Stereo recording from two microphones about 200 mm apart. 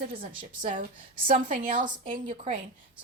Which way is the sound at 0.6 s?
40° right (ahead or behind).